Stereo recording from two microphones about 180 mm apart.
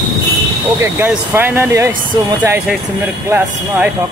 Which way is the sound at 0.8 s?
10° right (ahead or behind).